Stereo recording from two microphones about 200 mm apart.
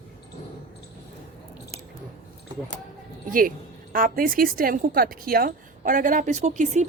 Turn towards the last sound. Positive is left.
turn(degrees=-35)  # may be behind; listen again after turning